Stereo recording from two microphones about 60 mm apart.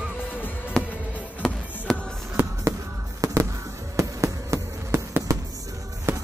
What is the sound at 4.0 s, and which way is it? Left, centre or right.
Insect, right.